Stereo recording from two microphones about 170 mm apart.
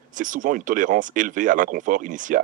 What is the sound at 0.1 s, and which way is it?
Speech, 50° right (ahead or behind).